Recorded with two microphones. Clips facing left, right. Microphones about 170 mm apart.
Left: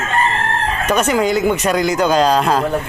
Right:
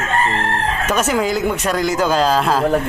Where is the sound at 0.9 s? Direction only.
Centre (ahead or behind).